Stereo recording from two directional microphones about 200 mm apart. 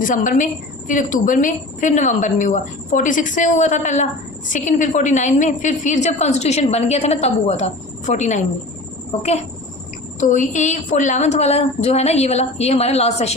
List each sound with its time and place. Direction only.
0.0 s a woman's voice: 40° left (ahead or behind)
10.2 s a woman's voice: 40° left (ahead or behind)